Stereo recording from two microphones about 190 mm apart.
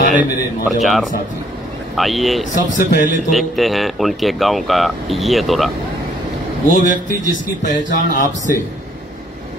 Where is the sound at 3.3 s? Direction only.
Centre (ahead or behind).